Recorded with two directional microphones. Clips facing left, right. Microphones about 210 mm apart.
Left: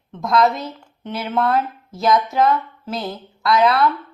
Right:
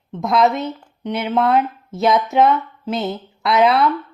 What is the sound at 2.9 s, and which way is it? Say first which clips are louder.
Speech: right 4 dB; 25° right (ahead or behind).